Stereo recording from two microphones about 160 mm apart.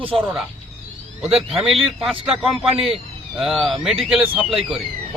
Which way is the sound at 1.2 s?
5° right (ahead or behind).